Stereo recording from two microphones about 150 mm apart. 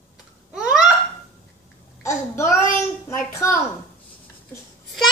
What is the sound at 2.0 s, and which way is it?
A child's voice, 20° left (ahead or behind).